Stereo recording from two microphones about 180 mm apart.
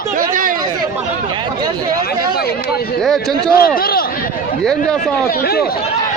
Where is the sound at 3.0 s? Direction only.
Centre (ahead or behind).